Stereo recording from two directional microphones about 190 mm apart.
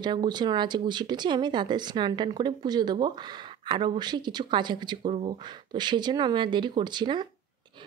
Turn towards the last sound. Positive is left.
turn(degrees=-25)  # may be behind; listen again after turning